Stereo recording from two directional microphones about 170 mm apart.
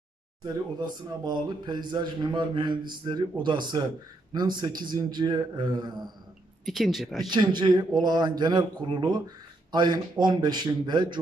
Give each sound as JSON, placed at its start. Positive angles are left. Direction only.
{"t": 0.7, "sound": "a man's voice", "side_deg": -25}
{"t": 6.6, "sound": "speech", "side_deg": 0}
{"t": 7.2, "sound": "a man's voice", "side_deg": -25}